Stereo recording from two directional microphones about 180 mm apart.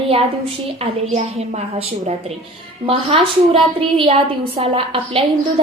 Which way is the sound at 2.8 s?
30° right (ahead or behind).